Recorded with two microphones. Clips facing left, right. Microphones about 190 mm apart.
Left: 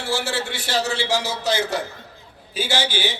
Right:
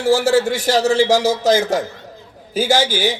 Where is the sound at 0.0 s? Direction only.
40° right (ahead or behind).